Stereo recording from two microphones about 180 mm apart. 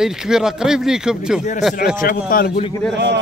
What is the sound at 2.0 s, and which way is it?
Speech, 55° left (ahead or behind).